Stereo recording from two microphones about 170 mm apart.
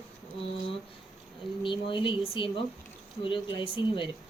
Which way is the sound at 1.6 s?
30° left (ahead or behind).